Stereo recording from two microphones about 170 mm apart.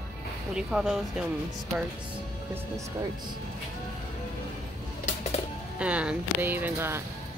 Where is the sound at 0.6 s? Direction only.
5° right (ahead or behind).